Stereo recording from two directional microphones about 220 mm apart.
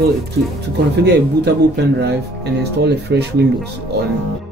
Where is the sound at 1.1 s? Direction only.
50° right (ahead or behind).